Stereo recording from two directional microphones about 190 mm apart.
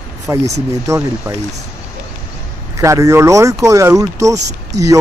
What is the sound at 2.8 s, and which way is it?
Speech, 15° right (ahead or behind).